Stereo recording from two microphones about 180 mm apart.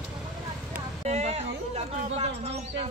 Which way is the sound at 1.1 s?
40° right (ahead or behind).